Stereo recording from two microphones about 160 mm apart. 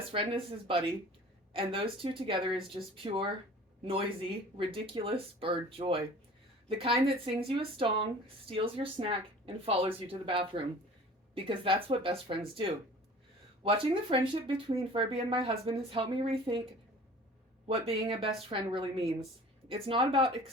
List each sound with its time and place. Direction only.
0.1 s speech: 35° right (ahead or behind)
17.7 s speech: 35° right (ahead or behind)